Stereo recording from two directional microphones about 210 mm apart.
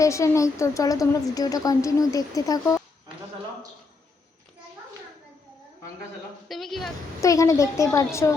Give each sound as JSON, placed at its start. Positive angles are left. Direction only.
{"t": 0.0, "sound": "speech", "side_deg": 15}
{"t": 6.5, "sound": "speech", "side_deg": 0}
{"t": 7.2, "sound": "speech", "side_deg": 15}